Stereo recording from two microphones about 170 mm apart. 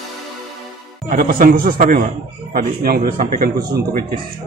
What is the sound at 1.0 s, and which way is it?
A man's voice, 55° right (ahead or behind).